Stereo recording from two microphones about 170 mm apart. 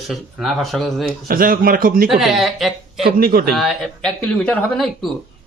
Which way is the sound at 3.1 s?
60° right (ahead or behind).